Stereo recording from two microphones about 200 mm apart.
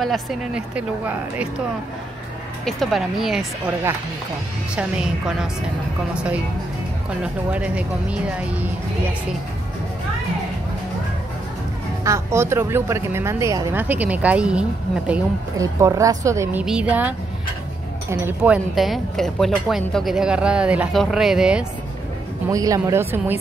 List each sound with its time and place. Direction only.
0.0 s speech: centre (ahead or behind)
2.6 s speech: centre (ahead or behind)
4.7 s speech: 5° right (ahead or behind)
7.5 s speech: 5° right (ahead or behind)
12.0 s speech: 15° right (ahead or behind)
15.5 s speech: 15° right (ahead or behind)
18.1 s speech: 10° right (ahead or behind)
22.5 s speech: 15° right (ahead or behind)